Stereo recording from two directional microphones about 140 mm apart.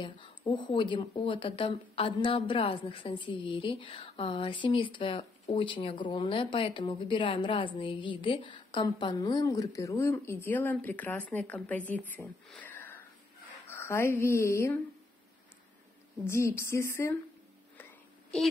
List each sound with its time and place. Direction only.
0.0 s a woman's voice: 35° left (ahead or behind); by 12.2 s 10° left (ahead or behind)
12.5 s sniff: 15° left (ahead or behind)
13.7 s speech: 15° left (ahead or behind)
16.3 s speech: 20° left (ahead or behind)
17.7 s whispering: 10° left (ahead or behind)